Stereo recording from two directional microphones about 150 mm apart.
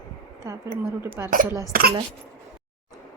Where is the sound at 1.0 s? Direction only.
15° right (ahead or behind).